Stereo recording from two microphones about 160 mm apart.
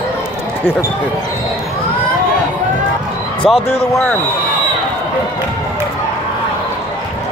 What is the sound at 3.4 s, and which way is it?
Speech, centre (ahead or behind).